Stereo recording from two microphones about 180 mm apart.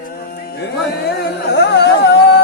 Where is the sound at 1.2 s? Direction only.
70° left (ahead or behind).